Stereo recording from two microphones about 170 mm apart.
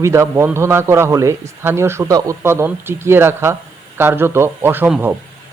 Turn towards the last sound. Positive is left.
turn(degrees=-10)  # may be behind; listen again after turning